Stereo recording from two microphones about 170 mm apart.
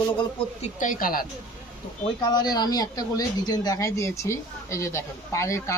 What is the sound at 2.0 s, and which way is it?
Speech, 25° left (ahead or behind).